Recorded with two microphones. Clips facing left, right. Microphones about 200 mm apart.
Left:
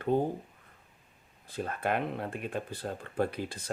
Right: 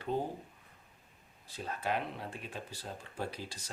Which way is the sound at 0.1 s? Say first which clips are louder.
Left 7 dB; 55° left (ahead or behind).